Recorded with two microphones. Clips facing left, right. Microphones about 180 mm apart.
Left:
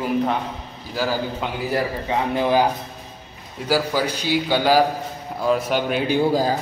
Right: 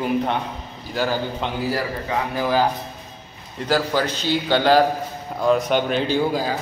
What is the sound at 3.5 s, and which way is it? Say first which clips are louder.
A man's voice: even; 10° left (ahead or behind).